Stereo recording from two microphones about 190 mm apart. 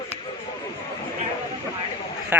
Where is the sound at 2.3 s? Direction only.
10° right (ahead or behind).